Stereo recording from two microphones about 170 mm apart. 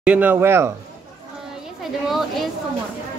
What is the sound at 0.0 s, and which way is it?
Speech, 10° right (ahead or behind).